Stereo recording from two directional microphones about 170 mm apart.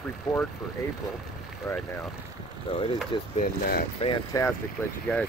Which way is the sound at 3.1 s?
30° left (ahead or behind).